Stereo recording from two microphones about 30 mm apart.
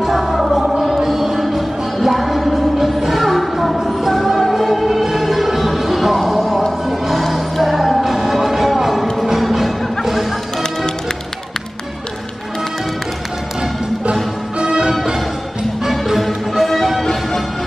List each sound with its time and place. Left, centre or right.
0.0 s music: centre
14.6 s music: right
15.9 s music: centre